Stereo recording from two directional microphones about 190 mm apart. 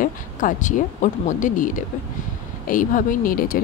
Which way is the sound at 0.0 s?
45° left (ahead or behind).